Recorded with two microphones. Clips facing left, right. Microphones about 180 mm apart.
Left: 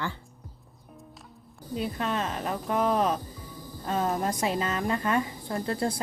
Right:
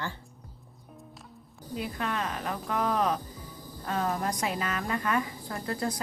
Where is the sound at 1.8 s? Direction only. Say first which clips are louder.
Left 3 dB; 25° left (ahead or behind).